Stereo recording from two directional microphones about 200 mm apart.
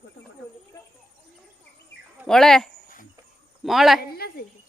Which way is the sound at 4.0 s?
50° left (ahead or behind).